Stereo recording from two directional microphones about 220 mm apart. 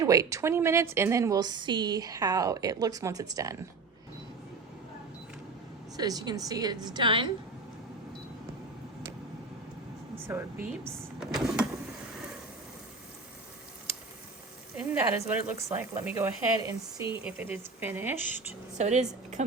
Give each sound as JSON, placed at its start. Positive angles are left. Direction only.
{"t": 0.0, "sound": "a woman's voice", "side_deg": -15}
{"t": 6.0, "sound": "a woman's voice", "side_deg": -15}
{"t": 10.2, "sound": "a woman's voice", "side_deg": -10}
{"t": 14.8, "sound": "a woman's voice", "side_deg": -5}
{"t": 18.2, "sound": "speech", "side_deg": 35}
{"t": 18.8, "sound": "a woman's voice", "side_deg": -30}